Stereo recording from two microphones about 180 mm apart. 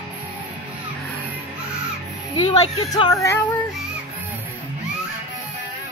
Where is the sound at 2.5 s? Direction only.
25° left (ahead or behind).